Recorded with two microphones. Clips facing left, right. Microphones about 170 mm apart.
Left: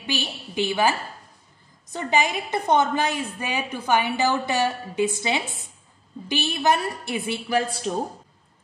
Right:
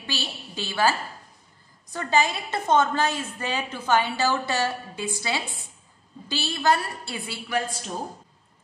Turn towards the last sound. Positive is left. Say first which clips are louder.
# left 4 dB
turn(degrees=30)  # may be behind; listen again after turning